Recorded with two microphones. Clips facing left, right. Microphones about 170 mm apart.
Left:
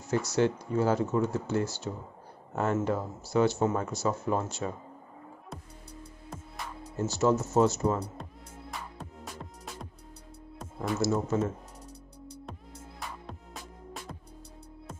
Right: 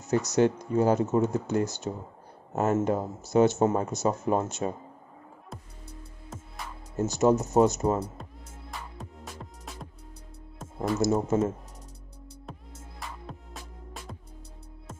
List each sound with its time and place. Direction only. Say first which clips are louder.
0.0 s speech: right 3 dB; 20° right (ahead or behind)
7.0 s speech: right 3 dB; 15° right (ahead or behind)
8.2 s music: left 1 dB; centre (ahead or behind)
10.8 s speech: right 3 dB; 25° right (ahead or behind)
13.3 s music: right 1 dB; centre (ahead or behind)